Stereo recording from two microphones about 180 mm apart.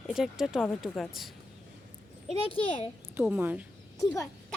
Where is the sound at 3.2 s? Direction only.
10° right (ahead or behind).